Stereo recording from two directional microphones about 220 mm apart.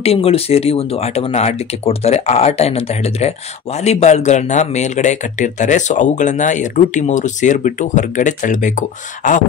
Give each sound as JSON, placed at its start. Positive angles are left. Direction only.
{"t": 0.0, "sound": "speech", "side_deg": 25}